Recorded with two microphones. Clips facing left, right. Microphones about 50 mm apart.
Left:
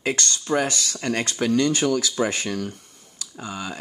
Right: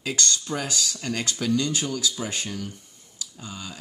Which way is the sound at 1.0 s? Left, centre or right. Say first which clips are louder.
Left 8 dB; left.